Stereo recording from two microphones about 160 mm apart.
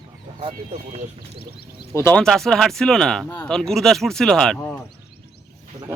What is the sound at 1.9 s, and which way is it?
Speech, 15° left (ahead or behind).